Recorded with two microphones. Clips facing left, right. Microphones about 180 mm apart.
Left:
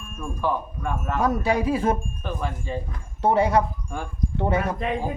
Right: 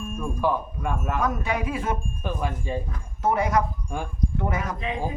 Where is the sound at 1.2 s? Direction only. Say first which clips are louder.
Left 7 dB; 35° left (ahead or behind).